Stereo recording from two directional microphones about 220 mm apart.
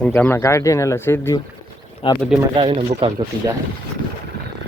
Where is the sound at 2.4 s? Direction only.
25° right (ahead or behind).